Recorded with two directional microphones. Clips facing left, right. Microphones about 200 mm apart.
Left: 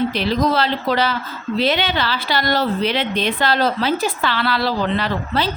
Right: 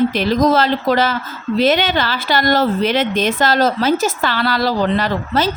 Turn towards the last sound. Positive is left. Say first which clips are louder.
# right 3 dB
turn(degrees=-45)  # may be behind; listen again after turning